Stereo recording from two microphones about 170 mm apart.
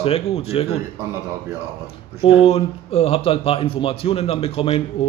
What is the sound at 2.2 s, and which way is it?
Speech, 35° left (ahead or behind).